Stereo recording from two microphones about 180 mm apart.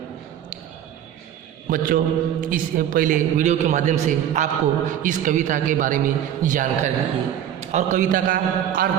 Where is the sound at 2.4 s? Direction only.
50° right (ahead or behind).